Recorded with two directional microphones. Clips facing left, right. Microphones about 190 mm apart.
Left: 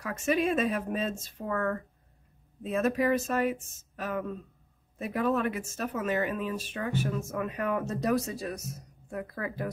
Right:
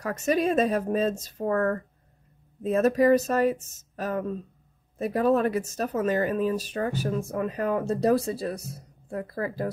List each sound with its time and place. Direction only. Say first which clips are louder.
0.0 s speech: right 3 dB; 40° right (ahead or behind)
3.9 s a sound: right 4 dB; 40° right (ahead or behind)
4.9 s speech: right 6 dB; 40° right (ahead or behind)